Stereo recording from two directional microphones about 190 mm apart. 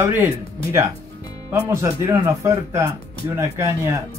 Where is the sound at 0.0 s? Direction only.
10° right (ahead or behind).